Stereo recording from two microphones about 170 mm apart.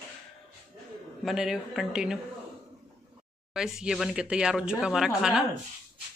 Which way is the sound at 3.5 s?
5° right (ahead or behind).